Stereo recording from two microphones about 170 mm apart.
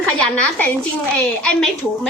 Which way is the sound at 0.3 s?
10° left (ahead or behind).